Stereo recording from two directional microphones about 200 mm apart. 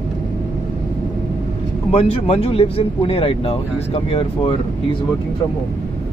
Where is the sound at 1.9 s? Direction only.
30° left (ahead or behind).